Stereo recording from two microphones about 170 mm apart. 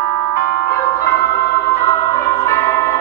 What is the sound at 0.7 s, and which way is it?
Music, 15° left (ahead or behind).